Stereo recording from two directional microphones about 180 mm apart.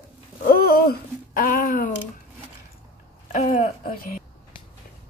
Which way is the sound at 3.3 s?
45° left (ahead or behind).